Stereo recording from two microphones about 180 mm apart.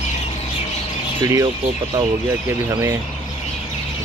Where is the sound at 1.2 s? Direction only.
20° right (ahead or behind).